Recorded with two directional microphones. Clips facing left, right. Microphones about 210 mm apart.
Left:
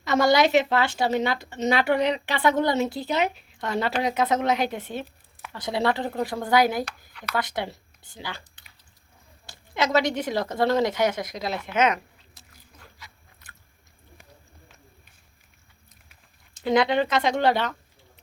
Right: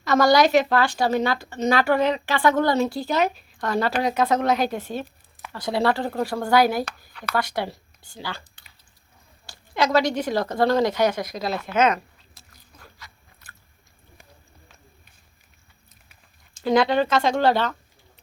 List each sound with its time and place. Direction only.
0.0 s a woman's voice: 20° left (ahead or behind)
12.4 s biting: 20° left (ahead or behind)
16.6 s a woman's voice: 20° left (ahead or behind)